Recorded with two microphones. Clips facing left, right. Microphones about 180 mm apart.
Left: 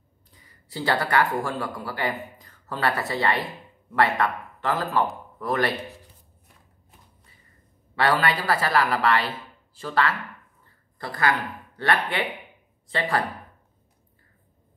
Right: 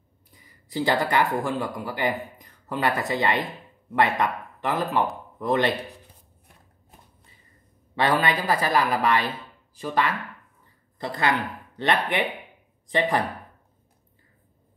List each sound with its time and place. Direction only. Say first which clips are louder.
0.5 s a woman's voice: right 2 dB; 15° right (ahead or behind)
7.9 s a woman's voice: even; 20° right (ahead or behind)